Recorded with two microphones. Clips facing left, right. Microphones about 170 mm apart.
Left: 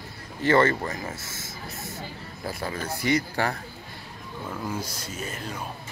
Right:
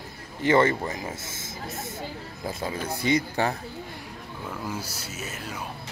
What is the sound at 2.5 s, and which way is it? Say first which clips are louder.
Speech: right 1 dB; 20° right (ahead or behind).